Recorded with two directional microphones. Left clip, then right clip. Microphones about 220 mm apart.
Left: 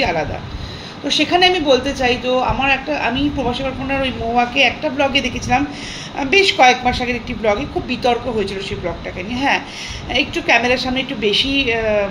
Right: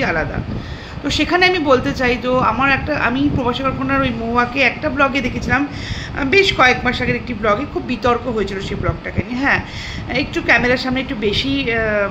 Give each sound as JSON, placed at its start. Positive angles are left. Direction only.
{"t": 1.0, "sound": "a woman's voice", "side_deg": -20}